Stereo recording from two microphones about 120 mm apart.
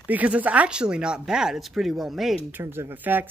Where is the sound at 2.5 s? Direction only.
20° right (ahead or behind).